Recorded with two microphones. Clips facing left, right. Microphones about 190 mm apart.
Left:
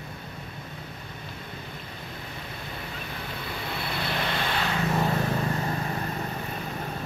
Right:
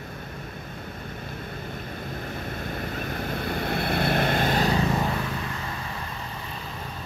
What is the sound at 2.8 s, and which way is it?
Vehicle, 50° right (ahead or behind).